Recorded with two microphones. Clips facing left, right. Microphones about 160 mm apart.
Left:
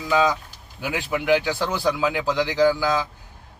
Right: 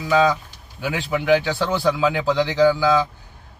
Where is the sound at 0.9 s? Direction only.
10° left (ahead or behind).